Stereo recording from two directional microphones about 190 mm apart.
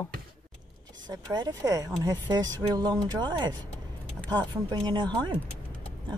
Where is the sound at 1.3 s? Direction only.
20° right (ahead or behind).